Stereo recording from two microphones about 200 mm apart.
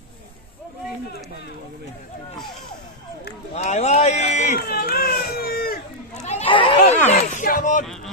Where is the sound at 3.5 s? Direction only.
35° left (ahead or behind).